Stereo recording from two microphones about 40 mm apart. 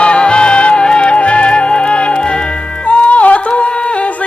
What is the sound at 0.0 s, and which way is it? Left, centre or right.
Music, left.